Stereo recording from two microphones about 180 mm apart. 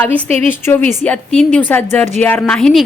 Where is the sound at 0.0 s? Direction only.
10° left (ahead or behind).